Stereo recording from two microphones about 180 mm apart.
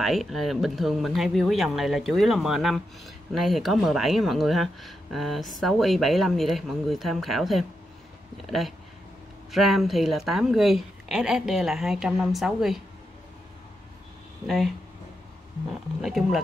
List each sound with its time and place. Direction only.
0.0 s speech: centre (ahead or behind)
16.0 s speech: centre (ahead or behind)